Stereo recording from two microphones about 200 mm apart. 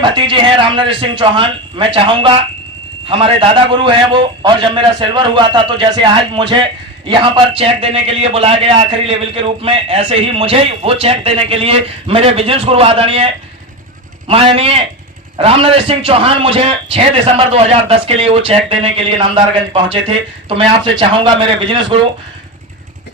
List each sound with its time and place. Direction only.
0.0 s a man's voice: 25° right (ahead or behind)